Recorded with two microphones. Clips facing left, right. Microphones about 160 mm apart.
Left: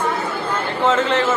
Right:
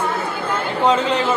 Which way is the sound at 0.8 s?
15° right (ahead or behind).